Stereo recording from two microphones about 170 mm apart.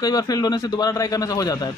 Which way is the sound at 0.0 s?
20° left (ahead or behind).